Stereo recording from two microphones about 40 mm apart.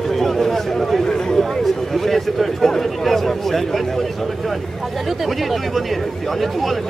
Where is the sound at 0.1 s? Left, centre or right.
Centre.